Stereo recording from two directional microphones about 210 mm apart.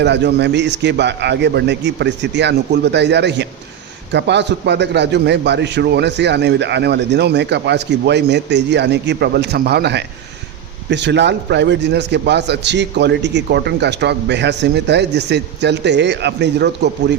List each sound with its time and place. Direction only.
0.0 s a man's voice: 55° right (ahead or behind)